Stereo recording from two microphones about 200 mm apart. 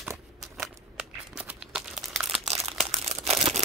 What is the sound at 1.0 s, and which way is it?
Crumpling, 5° right (ahead or behind).